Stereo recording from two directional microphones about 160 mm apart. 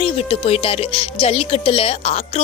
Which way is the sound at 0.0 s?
35° left (ahead or behind).